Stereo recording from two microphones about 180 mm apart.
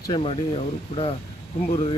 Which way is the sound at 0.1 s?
35° left (ahead or behind).